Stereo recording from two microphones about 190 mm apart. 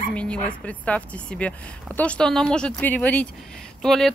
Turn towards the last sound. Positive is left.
turn(degrees=0)  # may be behind; listen again after turning